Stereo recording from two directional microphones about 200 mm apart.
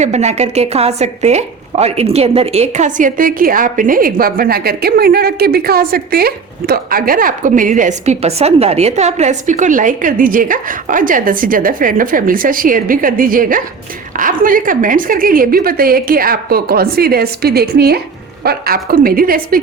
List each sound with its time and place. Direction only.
0.0 s a woman's voice: 35° right (ahead or behind)